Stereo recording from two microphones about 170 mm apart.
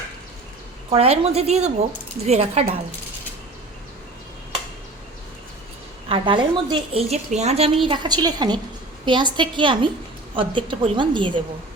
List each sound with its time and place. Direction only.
0.9 s a woman's voice: 35° right (ahead or behind)
6.1 s a woman's voice: 30° right (ahead or behind)